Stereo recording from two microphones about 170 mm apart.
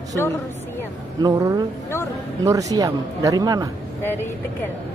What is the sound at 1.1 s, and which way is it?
Speech, 20° right (ahead or behind).